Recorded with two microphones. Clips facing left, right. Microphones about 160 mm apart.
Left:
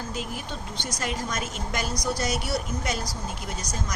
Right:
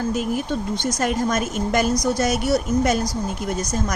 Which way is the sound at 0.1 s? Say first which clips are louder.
Right 11 dB; 50° right (ahead or behind).